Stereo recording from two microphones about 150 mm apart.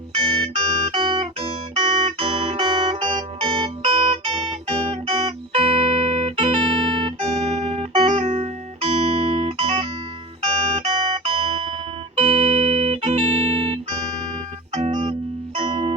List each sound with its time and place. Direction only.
0.2 s music: 35° right (ahead or behind)
7.4 s music: 50° right (ahead or behind)
7.9 s music: 35° right (ahead or behind)